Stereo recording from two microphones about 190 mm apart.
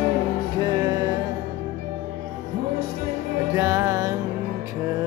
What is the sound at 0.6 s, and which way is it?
Music, 20° right (ahead or behind).